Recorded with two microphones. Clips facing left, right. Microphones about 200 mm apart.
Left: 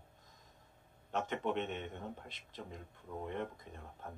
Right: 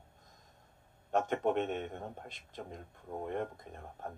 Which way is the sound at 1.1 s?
45° right (ahead or behind).